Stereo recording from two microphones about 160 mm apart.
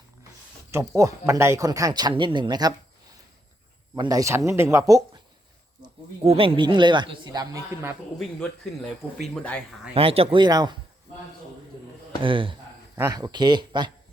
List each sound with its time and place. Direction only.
0.7 s speech: 20° right (ahead or behind)
3.9 s speech: 20° right (ahead or behind)
5.8 s speech: 35° right (ahead or behind); by 7.9 s 20° right (ahead or behind)
8.7 s speech: 5° left (ahead or behind)
9.9 s speech: 35° right (ahead or behind)
12.2 s speech: 30° right (ahead or behind)